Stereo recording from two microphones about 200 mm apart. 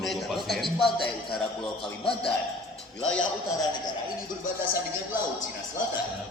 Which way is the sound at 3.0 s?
5° left (ahead or behind).